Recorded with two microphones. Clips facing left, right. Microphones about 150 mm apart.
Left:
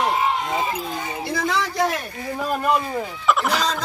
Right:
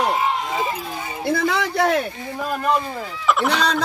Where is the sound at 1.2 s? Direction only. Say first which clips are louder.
Right 4 dB; 55° right (ahead or behind).